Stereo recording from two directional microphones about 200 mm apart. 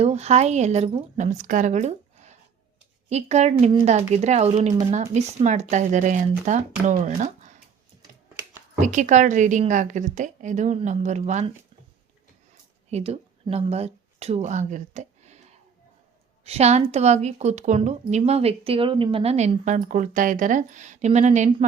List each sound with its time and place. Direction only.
0.0 s a woman's voice: 30° right (ahead or behind)
8.8 s a woman's voice: 40° right (ahead or behind)
12.9 s speech: 30° right (ahead or behind)
16.5 s a woman's voice: 30° right (ahead or behind)